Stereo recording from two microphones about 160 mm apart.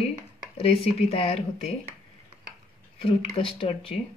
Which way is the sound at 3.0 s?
40° left (ahead or behind).